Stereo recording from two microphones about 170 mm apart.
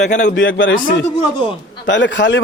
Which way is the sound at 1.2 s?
30° left (ahead or behind).